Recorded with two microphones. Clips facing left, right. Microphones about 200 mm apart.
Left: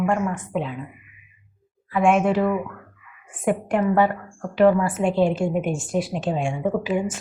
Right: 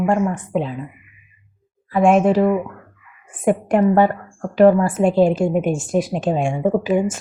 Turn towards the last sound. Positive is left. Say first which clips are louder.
# right 5 dB
turn(degrees=-45)  # may be behind; listen again after turning